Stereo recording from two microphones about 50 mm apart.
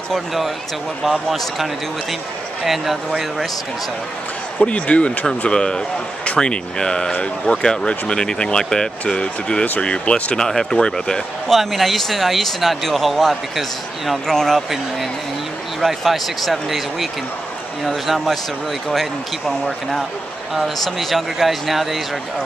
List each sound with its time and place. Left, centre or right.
1.3 s speech: centre
4.6 s speech: left
10.4 s speech: centre
11.5 s speech: centre
15.8 s speech: centre
20.5 s speech: centre